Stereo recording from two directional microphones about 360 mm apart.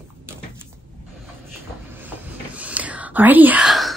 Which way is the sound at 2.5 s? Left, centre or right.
Centre.